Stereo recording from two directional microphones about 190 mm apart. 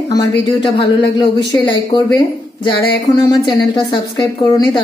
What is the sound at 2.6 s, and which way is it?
A woman's voice, 25° left (ahead or behind).